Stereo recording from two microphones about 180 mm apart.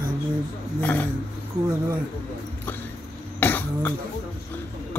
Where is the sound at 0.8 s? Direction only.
10° left (ahead or behind).